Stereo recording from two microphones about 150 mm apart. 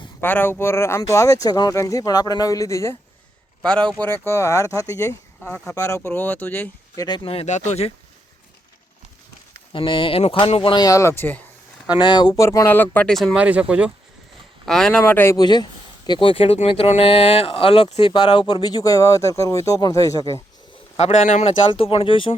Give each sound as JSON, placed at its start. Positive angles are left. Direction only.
{"t": 0.2, "sound": "speech", "side_deg": 15}
{"t": 3.6, "sound": "a man's voice", "side_deg": 5}
{"t": 4.3, "sound": "speech", "side_deg": 20}
{"t": 6.9, "sound": "speech", "side_deg": 25}
{"t": 7.2, "sound": "speech", "side_deg": 40}
{"t": 9.7, "sound": "speech", "side_deg": 35}
{"t": 11.9, "sound": "speech", "side_deg": 30}
{"t": 14.7, "sound": "speech", "side_deg": 5}
{"t": 15.4, "sound": "speech", "side_deg": 30}
{"t": 18.0, "sound": "speech", "side_deg": 30}
{"t": 20.9, "sound": "speech", "side_deg": 50}
{"t": 21.6, "sound": "speech", "side_deg": 35}